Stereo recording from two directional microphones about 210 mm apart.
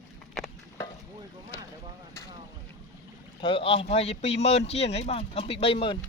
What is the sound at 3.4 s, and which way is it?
Speech, 25° left (ahead or behind).